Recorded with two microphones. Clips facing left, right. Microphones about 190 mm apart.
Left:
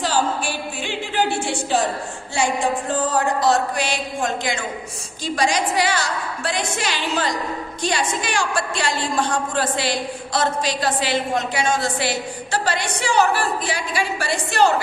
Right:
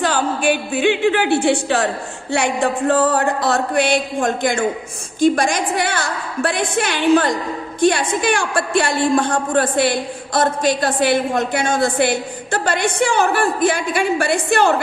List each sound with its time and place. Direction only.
0.0 s a woman's voice: 60° right (ahead or behind)